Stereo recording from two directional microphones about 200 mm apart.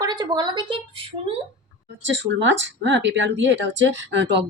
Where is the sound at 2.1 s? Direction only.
65° right (ahead or behind).